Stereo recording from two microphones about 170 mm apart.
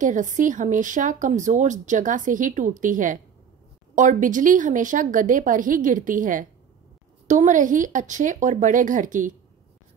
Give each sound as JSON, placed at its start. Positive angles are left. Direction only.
{"t": 0.0, "sound": "speech", "side_deg": -50}